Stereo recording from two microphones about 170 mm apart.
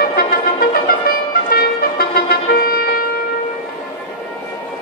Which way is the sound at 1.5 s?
60° left (ahead or behind).